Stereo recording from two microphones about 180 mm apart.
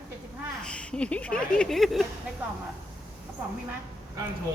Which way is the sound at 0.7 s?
5° left (ahead or behind).